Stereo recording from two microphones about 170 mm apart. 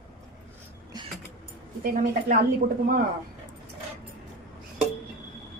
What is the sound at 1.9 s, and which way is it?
A woman's voice, 55° right (ahead or behind).